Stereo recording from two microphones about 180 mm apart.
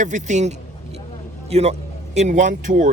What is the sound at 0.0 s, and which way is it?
A man's voice, 40° right (ahead or behind).